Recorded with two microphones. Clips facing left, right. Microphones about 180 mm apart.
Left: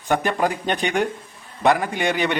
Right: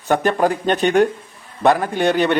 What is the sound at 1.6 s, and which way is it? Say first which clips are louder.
Speech: right 3 dB; 50° right (ahead or behind).